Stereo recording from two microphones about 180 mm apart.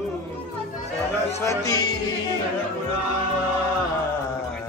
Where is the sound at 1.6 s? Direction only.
20° left (ahead or behind).